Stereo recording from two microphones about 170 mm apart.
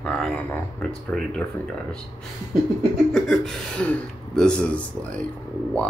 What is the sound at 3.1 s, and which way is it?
Speech, centre (ahead or behind).